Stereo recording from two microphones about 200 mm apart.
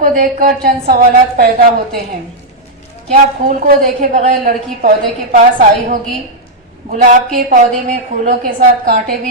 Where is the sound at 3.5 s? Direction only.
40° right (ahead or behind).